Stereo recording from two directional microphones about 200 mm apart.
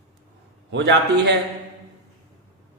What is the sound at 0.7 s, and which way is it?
Speech, 60° right (ahead or behind).